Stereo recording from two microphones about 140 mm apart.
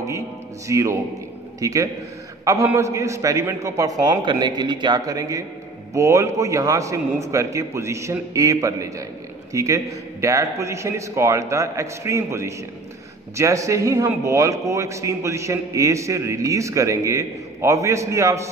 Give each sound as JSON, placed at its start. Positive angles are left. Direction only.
{"t": 0.7, "sound": "a man's voice", "side_deg": -20}